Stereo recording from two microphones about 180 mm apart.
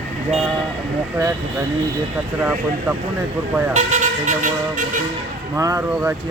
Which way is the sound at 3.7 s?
40° right (ahead or behind).